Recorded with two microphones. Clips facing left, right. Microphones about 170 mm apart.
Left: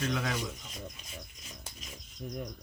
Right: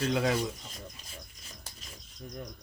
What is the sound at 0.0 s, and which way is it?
Speech, 30° right (ahead or behind).